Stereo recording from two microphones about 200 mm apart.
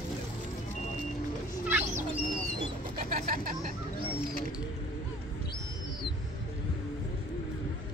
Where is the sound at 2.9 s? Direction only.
45° right (ahead or behind).